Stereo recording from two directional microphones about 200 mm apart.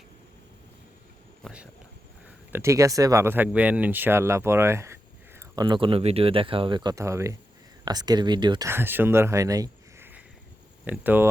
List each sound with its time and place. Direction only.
1.4 s speech: centre (ahead or behind)
2.2 s speech: 10° right (ahead or behind)